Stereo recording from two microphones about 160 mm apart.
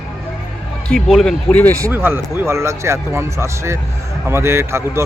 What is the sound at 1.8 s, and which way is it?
Speech, 15° right (ahead or behind).